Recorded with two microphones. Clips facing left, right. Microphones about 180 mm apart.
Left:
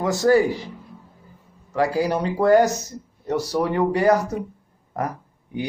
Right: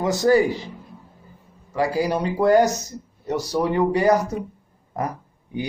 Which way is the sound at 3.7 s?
15° right (ahead or behind).